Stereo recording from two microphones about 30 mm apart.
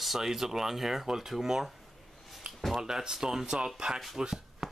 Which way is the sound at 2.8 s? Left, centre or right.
Right.